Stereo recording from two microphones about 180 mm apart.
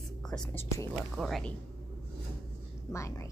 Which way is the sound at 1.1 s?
Centre (ahead or behind).